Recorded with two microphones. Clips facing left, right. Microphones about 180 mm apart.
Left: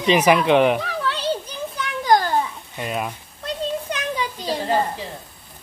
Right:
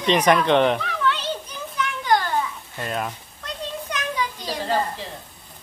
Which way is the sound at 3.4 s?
30° left (ahead or behind).